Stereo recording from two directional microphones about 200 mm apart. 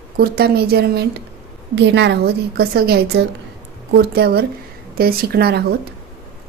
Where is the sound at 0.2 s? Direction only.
50° right (ahead or behind).